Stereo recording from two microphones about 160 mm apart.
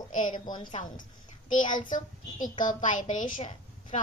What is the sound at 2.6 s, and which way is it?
Speech, 50° left (ahead or behind).